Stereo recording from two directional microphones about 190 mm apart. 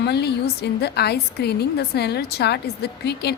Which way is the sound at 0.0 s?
60° left (ahead or behind).